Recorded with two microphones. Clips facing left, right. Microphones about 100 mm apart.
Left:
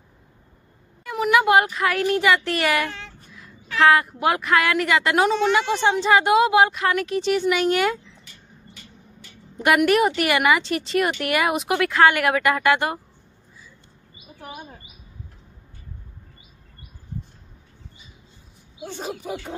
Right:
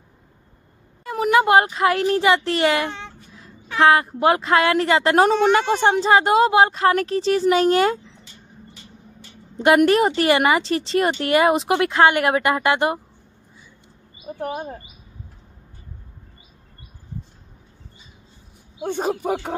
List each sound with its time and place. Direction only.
1.0 s a woman's voice: 35° right (ahead or behind)
6.0 s a woman's voice: 35° right (ahead or behind)
9.6 s speech: 30° right (ahead or behind)
14.4 s speech: 50° right (ahead or behind)
18.9 s speech: 50° right (ahead or behind)